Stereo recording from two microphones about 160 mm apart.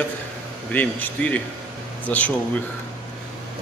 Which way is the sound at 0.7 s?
10° left (ahead or behind).